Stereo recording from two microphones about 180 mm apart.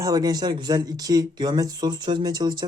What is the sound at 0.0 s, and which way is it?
Speech, 20° right (ahead or behind).